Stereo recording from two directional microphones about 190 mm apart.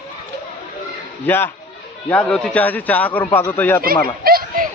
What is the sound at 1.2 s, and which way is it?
Speech, 10° left (ahead or behind).